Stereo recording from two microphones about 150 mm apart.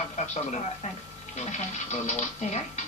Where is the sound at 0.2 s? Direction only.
45° left (ahead or behind).